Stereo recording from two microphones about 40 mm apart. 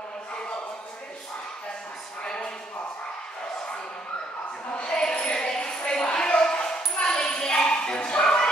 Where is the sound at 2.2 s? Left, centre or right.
Left.